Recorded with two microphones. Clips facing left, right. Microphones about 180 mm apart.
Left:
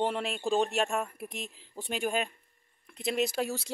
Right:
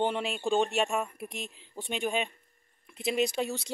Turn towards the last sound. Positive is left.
turn(degrees=5)  # may be behind; listen again after turning